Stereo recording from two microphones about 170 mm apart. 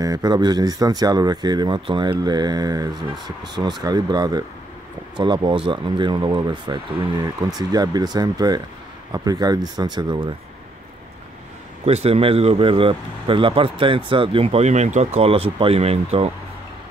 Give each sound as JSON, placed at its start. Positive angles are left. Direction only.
{"t": 0.0, "sound": "speech", "side_deg": -20}
{"t": 11.8, "sound": "speech", "side_deg": -35}